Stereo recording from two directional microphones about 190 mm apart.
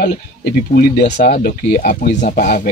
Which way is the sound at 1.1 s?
40° left (ahead or behind).